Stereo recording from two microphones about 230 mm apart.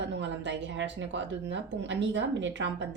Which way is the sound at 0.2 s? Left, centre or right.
Right.